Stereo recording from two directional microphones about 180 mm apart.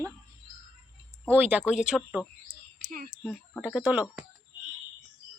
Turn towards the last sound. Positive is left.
turn(degrees=-5)  # may be behind; listen again after turning